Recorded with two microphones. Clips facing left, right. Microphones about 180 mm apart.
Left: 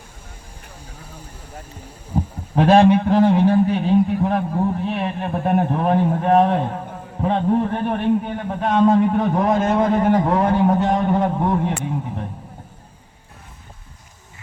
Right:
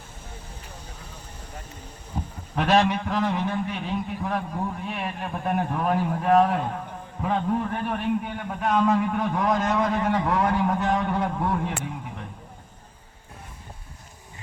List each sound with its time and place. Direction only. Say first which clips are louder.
1.0 s boat: left 3 dB; 10° left (ahead or behind)
2.6 s a man's voice: left 8 dB; 30° left (ahead or behind)